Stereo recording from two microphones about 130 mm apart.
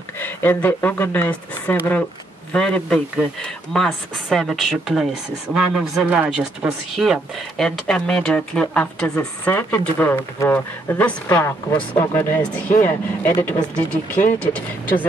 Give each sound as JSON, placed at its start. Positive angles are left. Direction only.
{"t": 0.2, "sound": "speech", "side_deg": 15}